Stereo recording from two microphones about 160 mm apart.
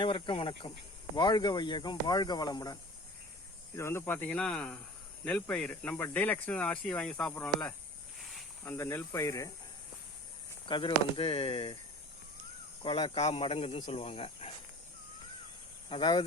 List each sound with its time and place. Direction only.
0.0 s speech: 30° left (ahead or behind)
3.8 s speech: 15° left (ahead or behind)
8.2 s snake: centre (ahead or behind)
8.6 s speech: 15° left (ahead or behind)
10.7 s speech: 30° left (ahead or behind)
12.8 s speech: 35° left (ahead or behind)
15.9 s speech: 30° left (ahead or behind)